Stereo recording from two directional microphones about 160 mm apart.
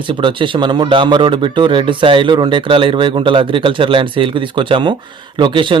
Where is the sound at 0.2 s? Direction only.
30° right (ahead or behind).